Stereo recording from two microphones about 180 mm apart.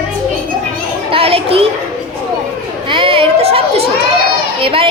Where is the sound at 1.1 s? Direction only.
30° right (ahead or behind).